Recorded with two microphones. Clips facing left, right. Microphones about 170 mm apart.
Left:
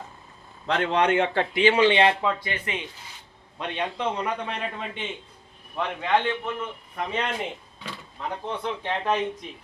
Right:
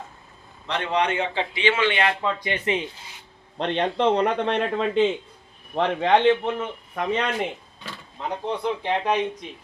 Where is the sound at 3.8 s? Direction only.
65° right (ahead or behind); by 5.1 s 80° right.